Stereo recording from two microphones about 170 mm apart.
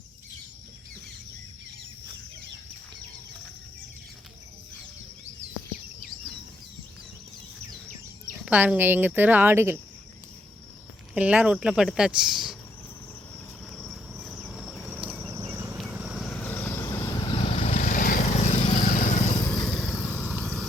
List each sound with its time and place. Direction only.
8.3 s speech: 10° right (ahead or behind)
11.1 s speech: 5° right (ahead or behind)
13.7 s insect: centre (ahead or behind)
15.1 s insect: 10° right (ahead or behind)
15.4 s a sound: 15° right (ahead or behind)
15.8 s vehicle: 5° right (ahead or behind)
16.3 s vehicle: 10° left (ahead or behind); by 17.7 s 35° left (ahead or behind)
17.7 s vehicle: 55° left (ahead or behind)
19.5 s vehicle: 5° left (ahead or behind)